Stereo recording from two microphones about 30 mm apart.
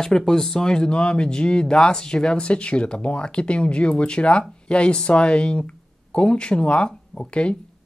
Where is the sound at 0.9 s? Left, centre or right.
Left.